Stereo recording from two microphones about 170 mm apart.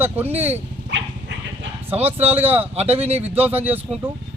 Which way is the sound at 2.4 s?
10° right (ahead or behind).